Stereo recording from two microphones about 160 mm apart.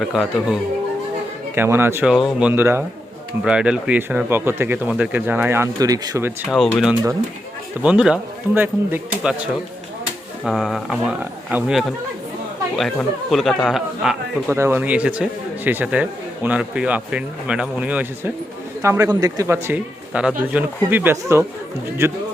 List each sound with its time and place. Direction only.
0.0 s speech: centre (ahead or behind)
1.5 s speech: 15° right (ahead or behind)
2.1 s speech: centre (ahead or behind)
2.5 s speech: 15° right (ahead or behind)
6.5 s speech: centre (ahead or behind)
10.4 s speech: centre (ahead or behind)
14.5 s speech: 15° right (ahead or behind)